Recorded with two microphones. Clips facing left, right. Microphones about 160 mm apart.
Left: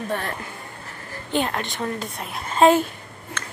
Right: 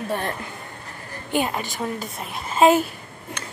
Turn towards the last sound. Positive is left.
turn(degrees=-15)  # may be behind; listen again after turning